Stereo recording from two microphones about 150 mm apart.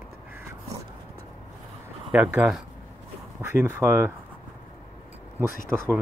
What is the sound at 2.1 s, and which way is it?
Speech, 10° right (ahead or behind).